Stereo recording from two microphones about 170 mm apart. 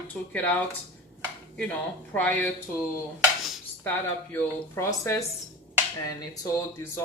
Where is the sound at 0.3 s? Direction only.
10° left (ahead or behind).